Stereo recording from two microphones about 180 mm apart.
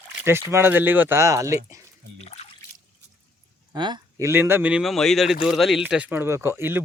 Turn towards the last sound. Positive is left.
turn(degrees=-15)  # may be behind; listen again after turning